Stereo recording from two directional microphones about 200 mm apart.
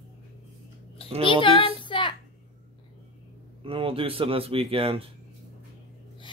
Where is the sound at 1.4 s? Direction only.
25° left (ahead or behind).